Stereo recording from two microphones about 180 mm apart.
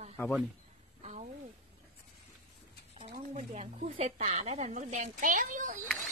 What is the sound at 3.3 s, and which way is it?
Speech, 40° right (ahead or behind).